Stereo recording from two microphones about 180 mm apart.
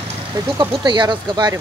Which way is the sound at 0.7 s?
25° right (ahead or behind).